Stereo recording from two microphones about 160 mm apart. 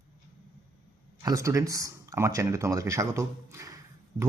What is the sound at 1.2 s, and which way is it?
Speech, 20° right (ahead or behind).